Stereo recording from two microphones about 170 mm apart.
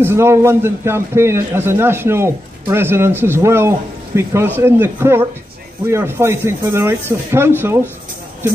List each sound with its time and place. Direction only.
0.0 s a man's voice: 15° right (ahead or behind)